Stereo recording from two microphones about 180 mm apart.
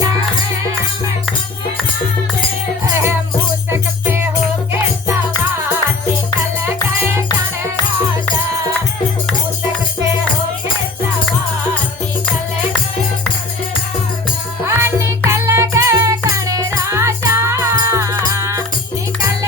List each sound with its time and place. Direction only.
2.8 s music: 15° right (ahead or behind)
14.6 s music: 15° right (ahead or behind)